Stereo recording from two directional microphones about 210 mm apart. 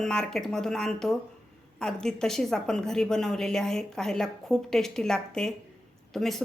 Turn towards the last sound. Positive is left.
turn(degrees=0)  # may be behind; listen again after turning